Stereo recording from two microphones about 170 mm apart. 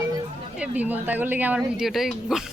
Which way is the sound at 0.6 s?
10° right (ahead or behind).